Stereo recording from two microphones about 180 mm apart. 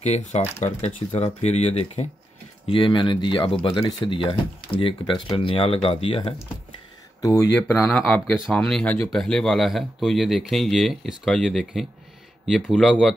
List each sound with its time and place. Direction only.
0.0 s speech: 40° left (ahead or behind); by 13.1 s centre (ahead or behind)